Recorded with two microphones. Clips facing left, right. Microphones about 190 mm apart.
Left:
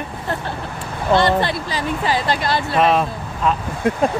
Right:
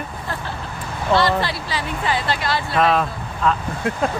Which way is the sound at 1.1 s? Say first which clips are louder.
Left 2 dB; 20° left (ahead or behind).